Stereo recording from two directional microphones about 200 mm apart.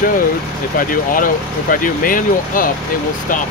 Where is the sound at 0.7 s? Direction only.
45° left (ahead or behind).